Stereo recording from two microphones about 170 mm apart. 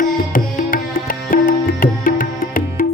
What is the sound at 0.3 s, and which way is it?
Music, 55° left (ahead or behind).